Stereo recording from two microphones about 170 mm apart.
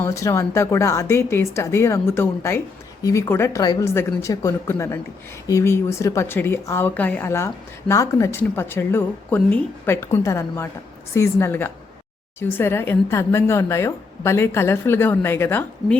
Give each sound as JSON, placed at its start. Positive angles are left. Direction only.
{"t": 0.0, "sound": "a woman's voice", "side_deg": 15}